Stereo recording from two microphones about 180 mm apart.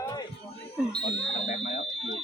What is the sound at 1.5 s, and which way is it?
Fire alarm, 40° left (ahead or behind).